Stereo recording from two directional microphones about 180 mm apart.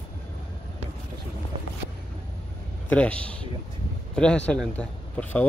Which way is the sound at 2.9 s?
5° left (ahead or behind).